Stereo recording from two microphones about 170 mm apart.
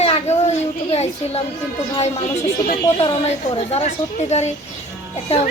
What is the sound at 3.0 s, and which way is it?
Speech, 35° left (ahead or behind).